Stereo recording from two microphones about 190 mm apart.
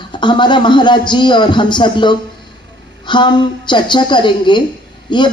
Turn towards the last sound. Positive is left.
turn(degrees=25)  # may be behind; listen again after turning